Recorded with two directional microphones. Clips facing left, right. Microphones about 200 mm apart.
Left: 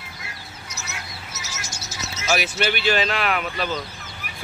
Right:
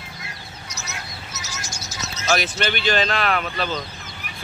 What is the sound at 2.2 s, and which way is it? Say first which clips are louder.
Speech: even; 10° left (ahead or behind).